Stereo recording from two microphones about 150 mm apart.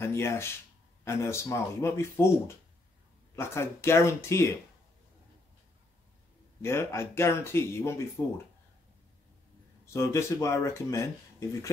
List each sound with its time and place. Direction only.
0.0 s speech: 15° left (ahead or behind)
6.6 s speech: 15° left (ahead or behind)
9.9 s speech: 20° left (ahead or behind)